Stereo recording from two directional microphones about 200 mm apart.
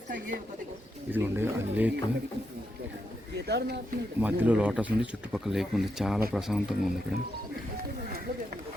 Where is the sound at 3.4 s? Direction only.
55° right (ahead or behind).